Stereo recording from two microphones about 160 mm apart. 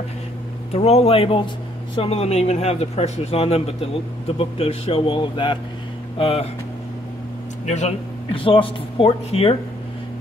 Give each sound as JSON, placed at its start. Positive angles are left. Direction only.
{"t": 0.7, "sound": "a man's voice", "side_deg": 40}
{"t": 7.6, "sound": "a man's voice", "side_deg": 45}